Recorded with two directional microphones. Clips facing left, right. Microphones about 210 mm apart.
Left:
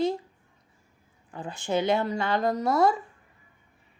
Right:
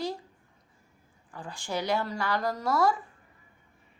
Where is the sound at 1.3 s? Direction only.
20° left (ahead or behind).